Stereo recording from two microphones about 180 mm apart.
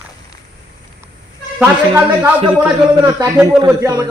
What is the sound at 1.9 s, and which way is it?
Speech, 10° right (ahead or behind).